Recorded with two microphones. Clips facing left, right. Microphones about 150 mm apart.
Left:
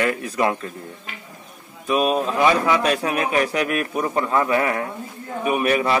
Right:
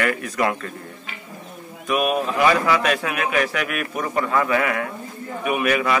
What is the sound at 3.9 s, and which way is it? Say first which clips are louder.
A man's voice: even; 15° left (ahead or behind).